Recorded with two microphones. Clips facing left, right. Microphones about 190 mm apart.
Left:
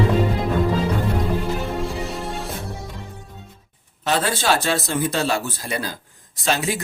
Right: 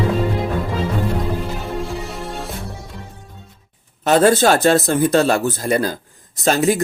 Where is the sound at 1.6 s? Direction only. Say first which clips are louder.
Even; centre (ahead or behind).